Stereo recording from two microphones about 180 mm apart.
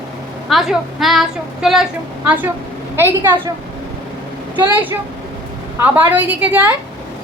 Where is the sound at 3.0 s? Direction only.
15° right (ahead or behind).